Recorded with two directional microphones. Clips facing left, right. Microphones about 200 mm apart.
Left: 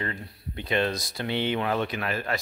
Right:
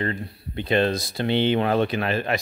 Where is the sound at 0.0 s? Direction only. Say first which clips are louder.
Right 6 dB; 30° right (ahead or behind).